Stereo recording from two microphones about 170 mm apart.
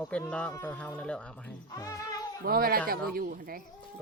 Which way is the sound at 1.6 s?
20° left (ahead or behind).